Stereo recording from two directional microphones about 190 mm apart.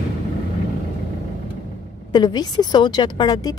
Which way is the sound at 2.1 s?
20° left (ahead or behind).